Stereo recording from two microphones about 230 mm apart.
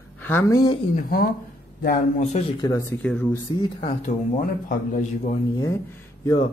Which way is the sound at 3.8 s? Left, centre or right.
Left.